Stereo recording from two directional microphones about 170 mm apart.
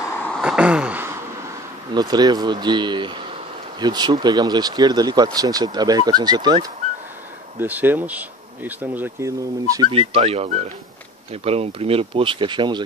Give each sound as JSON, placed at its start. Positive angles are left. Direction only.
{"t": 0.4, "sound": "a sound", "side_deg": -5}
{"t": 1.9, "sound": "speech", "side_deg": -25}
{"t": 7.5, "sound": "speech", "side_deg": -10}
{"t": 9.9, "sound": "speech", "side_deg": -35}